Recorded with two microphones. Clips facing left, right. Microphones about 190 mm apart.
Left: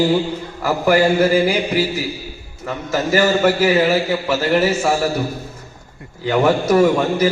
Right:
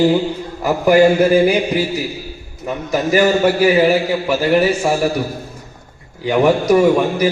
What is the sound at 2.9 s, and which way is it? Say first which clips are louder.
Speech: right 2 dB; 15° right (ahead or behind).